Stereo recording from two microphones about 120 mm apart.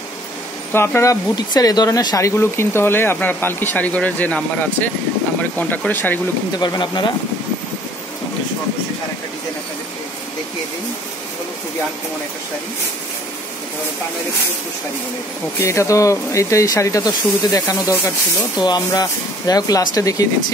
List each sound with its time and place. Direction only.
0.7 s speech: 20° left (ahead or behind)
1.3 s speech: 35° left (ahead or behind); by 6.1 s 15° left (ahead or behind)
6.6 s speech: 35° left (ahead or behind)
15.6 s speech: 25° left (ahead or behind)